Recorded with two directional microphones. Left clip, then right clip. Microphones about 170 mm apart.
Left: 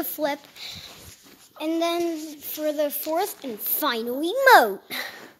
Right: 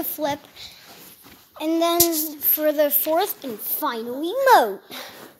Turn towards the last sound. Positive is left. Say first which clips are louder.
# left 1 dB
turn(degrees=30)  # may be behind; listen again after turning